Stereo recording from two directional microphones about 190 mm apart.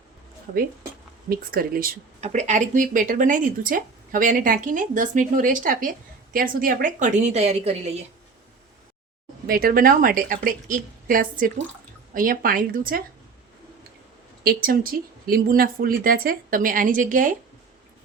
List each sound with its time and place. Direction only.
1.3 s speech: 50° right (ahead or behind)
2.2 s a woman's voice: 40° right (ahead or behind)
9.5 s speech: 50° right (ahead or behind)
14.4 s speech: 50° right (ahead or behind)